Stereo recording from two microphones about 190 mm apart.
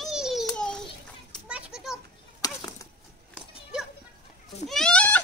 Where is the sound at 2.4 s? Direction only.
20° left (ahead or behind).